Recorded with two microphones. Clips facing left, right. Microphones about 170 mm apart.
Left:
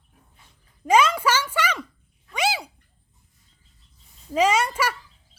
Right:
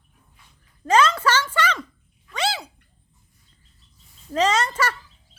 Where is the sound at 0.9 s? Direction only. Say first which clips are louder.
Even; 10° left (ahead or behind).